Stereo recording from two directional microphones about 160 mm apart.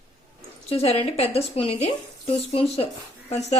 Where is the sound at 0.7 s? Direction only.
40° left (ahead or behind).